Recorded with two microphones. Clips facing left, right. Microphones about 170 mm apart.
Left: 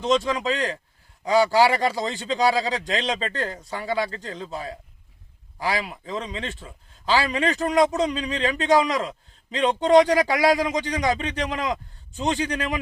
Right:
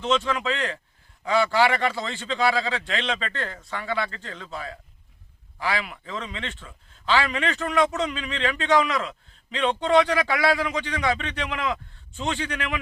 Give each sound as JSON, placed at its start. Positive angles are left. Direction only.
{"t": 0.0, "sound": "a man's voice", "side_deg": 40}